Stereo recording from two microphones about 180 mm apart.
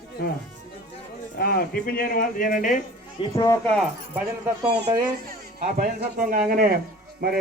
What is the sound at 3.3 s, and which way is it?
Speech, 15° left (ahead or behind).